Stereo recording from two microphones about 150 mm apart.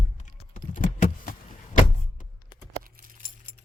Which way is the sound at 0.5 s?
65° left (ahead or behind).